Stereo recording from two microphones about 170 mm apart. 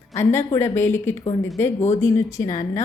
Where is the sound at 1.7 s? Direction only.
40° left (ahead or behind).